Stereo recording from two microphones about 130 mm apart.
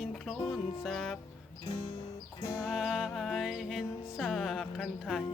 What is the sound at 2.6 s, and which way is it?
Music, centre (ahead or behind).